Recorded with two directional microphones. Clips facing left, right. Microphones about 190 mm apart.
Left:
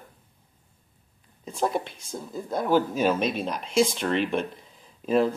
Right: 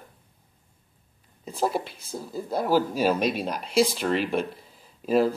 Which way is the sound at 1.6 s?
5° right (ahead or behind).